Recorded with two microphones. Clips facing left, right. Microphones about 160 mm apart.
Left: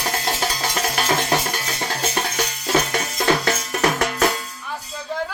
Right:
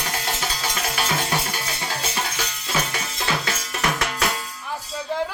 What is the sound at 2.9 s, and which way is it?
Music, 45° left (ahead or behind).